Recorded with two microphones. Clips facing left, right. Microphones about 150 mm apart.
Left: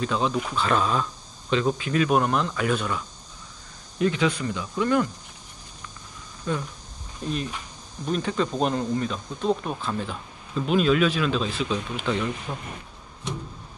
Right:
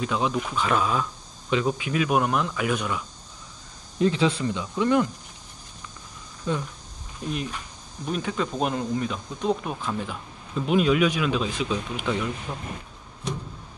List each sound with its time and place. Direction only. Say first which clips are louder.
0.0 s speech: left 1 dB; 10° right (ahead or behind)
4.0 s speech: right 1 dB; 30° right (ahead or behind)
6.5 s speech: right 1 dB; 20° right (ahead or behind)
12.5 s speech: left 1 dB; centre (ahead or behind)